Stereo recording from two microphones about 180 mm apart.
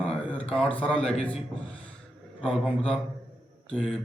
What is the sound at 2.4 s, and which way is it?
Speech, 5° left (ahead or behind).